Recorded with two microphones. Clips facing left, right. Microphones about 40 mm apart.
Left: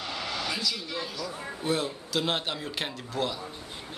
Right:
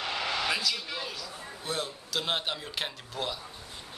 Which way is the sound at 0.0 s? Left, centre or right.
Right.